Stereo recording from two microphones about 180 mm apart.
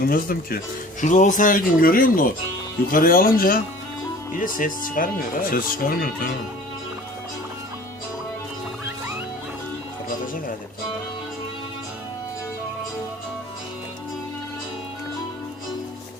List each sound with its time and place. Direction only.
0.1 s speech: 55° left (ahead or behind)
1.0 s speech: 45° left (ahead or behind)